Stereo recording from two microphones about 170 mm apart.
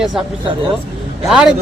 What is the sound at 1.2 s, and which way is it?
Speech, 5° right (ahead or behind).